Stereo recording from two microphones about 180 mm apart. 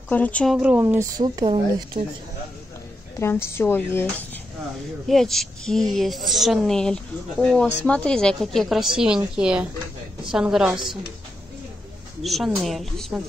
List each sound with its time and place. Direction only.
0.1 s speech: 10° left (ahead or behind)
0.6 s speech: 10° right (ahead or behind); by 2.0 s 30° right (ahead or behind)
3.2 s a woman's voice: 15° left (ahead or behind); by 11.0 s 5° right (ahead or behind)
12.2 s a woman's voice: centre (ahead or behind)